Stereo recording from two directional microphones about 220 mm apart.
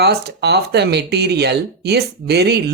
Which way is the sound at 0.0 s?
50° right (ahead or behind).